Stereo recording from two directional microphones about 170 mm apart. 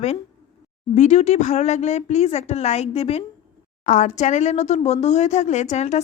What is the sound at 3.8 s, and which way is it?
Speech, 45° left (ahead or behind).